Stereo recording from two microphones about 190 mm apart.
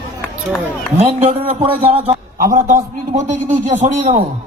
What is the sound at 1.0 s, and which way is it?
A man's voice, 35° right (ahead or behind).